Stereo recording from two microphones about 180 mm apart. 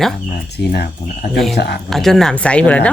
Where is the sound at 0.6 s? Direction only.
60° left (ahead or behind).